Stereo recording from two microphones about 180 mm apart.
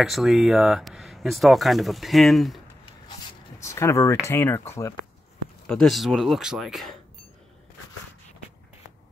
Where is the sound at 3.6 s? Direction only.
15° left (ahead or behind).